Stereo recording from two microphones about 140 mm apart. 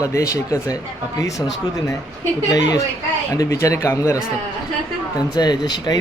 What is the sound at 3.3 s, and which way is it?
Speech, 25° left (ahead or behind).